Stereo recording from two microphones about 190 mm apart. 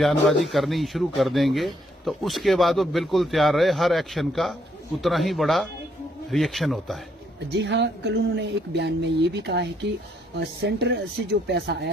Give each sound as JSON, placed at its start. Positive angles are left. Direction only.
{"t": 0.3, "sound": "a man's voice", "side_deg": 0}
{"t": 7.3, "sound": "a woman's voice", "side_deg": -65}